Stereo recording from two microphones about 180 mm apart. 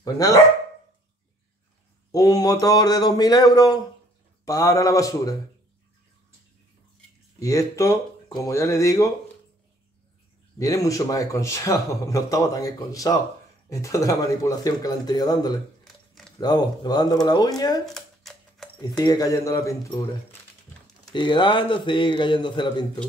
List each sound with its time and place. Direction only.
0.0 s speech: 20° left (ahead or behind)
2.1 s speech: 20° left (ahead or behind)
7.3 s speech: 20° left (ahead or behind)
10.6 s speech: 20° left (ahead or behind)
17.9 s a sound: centre (ahead or behind)
18.9 s speech: 20° left (ahead or behind)
21.1 s speech: 25° left (ahead or behind)